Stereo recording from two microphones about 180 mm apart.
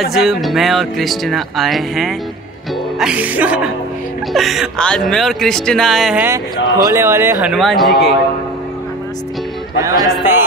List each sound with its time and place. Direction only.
0.0 s speech: centre (ahead or behind)
3.0 s music: 5° right (ahead or behind)
4.3 s speech: centre (ahead or behind)
6.9 s music: 15° right (ahead or behind)
7.5 s speech: centre (ahead or behind)
9.8 s music: 15° right (ahead or behind)